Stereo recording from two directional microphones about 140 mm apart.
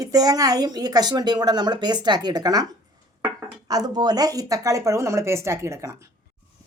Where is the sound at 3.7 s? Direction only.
25° right (ahead or behind).